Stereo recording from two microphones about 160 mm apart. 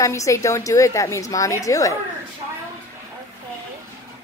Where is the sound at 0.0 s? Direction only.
20° left (ahead or behind).